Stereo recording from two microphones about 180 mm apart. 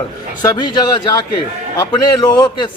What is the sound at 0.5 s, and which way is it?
Speech, 25° left (ahead or behind).